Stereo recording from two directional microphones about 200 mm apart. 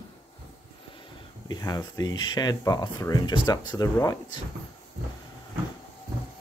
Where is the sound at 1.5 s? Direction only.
20° left (ahead or behind).